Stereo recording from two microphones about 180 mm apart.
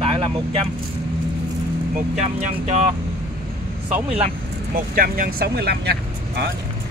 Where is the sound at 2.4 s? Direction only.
40° right (ahead or behind).